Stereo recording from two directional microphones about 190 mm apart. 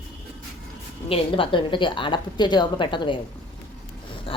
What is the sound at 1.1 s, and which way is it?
A woman's voice, 30° left (ahead or behind).